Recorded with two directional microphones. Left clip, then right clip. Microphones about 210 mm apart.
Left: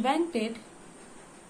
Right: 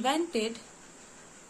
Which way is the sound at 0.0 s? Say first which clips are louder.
Left 1 dB; 15° right (ahead or behind).